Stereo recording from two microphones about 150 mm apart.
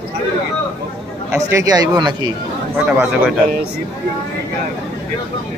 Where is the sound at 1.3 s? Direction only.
20° right (ahead or behind).